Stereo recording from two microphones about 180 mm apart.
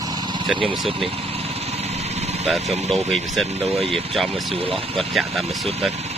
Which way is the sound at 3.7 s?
30° right (ahead or behind).